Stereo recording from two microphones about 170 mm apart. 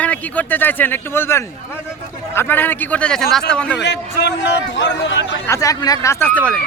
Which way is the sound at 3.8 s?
90° left.